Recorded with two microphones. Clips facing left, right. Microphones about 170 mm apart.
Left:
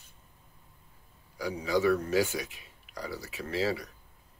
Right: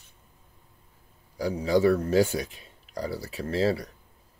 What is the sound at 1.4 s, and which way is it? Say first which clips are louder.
Speech: right 5 dB; 35° right (ahead or behind).